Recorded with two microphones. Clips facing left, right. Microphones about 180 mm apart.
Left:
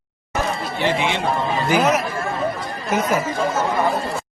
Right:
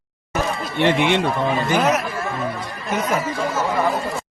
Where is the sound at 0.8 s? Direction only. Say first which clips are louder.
Right 4 dB; 65° right (ahead or behind).